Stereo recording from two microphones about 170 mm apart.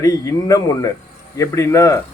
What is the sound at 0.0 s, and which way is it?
Speech, 20° left (ahead or behind).